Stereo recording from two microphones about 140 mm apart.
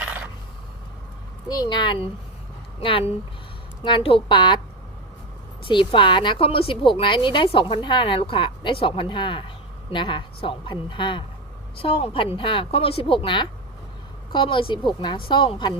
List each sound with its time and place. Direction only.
1.5 s a woman's voice: 30° left (ahead or behind)
3.8 s a woman's voice: 40° left (ahead or behind)
5.6 s a woman's voice: 35° left (ahead or behind)